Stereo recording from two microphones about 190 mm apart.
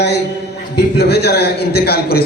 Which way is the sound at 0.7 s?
60° left (ahead or behind).